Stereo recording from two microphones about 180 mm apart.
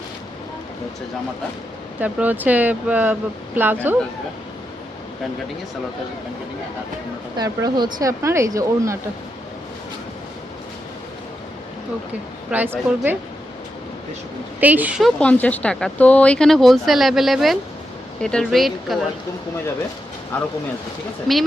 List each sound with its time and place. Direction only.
2.0 s speech: 10° right (ahead or behind)
7.3 s speech: 20° right (ahead or behind)
12.5 s speech: 10° right (ahead or behind)
14.6 s speech: 10° right (ahead or behind)
15.2 s speech: 5° left (ahead or behind)
20.3 s speech: 10° left (ahead or behind)